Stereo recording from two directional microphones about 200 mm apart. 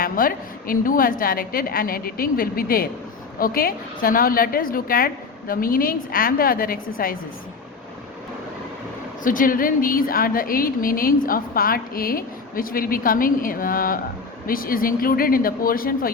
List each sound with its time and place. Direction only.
0.0 s a woman's voice: 45° left (ahead or behind)
9.2 s a woman's voice: 45° left (ahead or behind)